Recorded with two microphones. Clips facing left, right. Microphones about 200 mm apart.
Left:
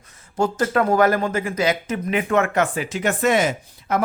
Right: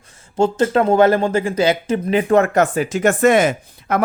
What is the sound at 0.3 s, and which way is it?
Speech, 25° right (ahead or behind).